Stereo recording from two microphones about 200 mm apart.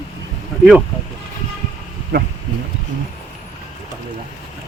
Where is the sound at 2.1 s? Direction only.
50° right (ahead or behind).